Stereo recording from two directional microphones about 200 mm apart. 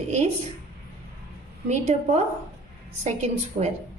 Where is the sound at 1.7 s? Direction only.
35° right (ahead or behind).